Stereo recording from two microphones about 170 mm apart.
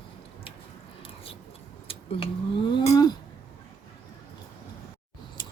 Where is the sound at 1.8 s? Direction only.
35° left (ahead or behind).